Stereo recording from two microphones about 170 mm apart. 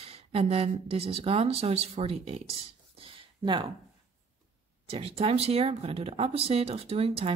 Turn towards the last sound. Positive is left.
turn(degrees=-35)  # may be behind; listen again after turning